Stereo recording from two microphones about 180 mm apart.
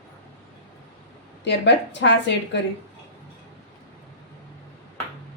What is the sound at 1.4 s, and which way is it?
Speech, 75° left (ahead or behind).